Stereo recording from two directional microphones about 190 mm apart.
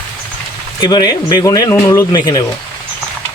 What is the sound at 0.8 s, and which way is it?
Speech, 20° left (ahead or behind).